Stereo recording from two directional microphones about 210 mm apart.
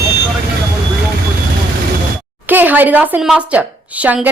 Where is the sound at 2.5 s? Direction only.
10° right (ahead or behind).